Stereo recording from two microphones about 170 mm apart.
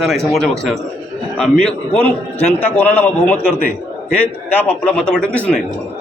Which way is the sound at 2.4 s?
40° left (ahead or behind).